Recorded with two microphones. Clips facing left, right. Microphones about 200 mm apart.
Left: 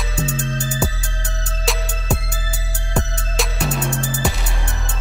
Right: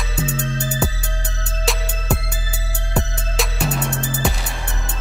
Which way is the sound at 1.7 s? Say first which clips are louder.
Even; centre (ahead or behind).